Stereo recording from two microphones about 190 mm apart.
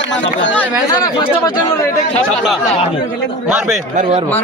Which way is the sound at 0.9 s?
20° left (ahead or behind).